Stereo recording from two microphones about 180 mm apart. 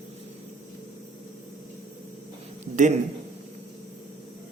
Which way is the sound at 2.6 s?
40° right (ahead or behind).